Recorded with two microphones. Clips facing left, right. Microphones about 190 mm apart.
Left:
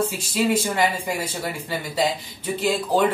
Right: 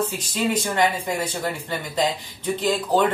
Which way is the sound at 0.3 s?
10° left (ahead or behind).